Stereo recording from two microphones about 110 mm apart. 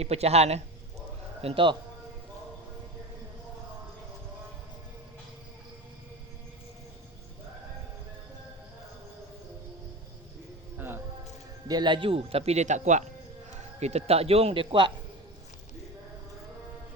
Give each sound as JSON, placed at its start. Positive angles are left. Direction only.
{"t": 0.0, "sound": "a man's voice", "side_deg": -70}
{"t": 1.4, "sound": "a man's voice", "side_deg": -60}
{"t": 10.8, "sound": "music", "side_deg": -20}
{"t": 11.7, "sound": "a man's voice", "side_deg": -45}